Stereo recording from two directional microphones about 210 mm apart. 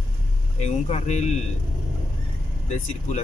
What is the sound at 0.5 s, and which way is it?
Speech, 30° left (ahead or behind).